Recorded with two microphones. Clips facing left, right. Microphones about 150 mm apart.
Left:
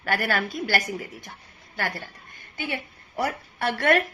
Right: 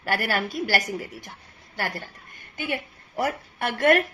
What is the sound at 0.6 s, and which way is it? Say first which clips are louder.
A woman's voice: right 1 dB; 40° right (ahead or behind).